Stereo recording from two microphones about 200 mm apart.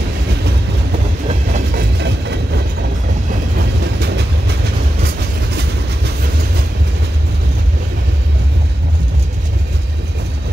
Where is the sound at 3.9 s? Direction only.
60° right (ahead or behind).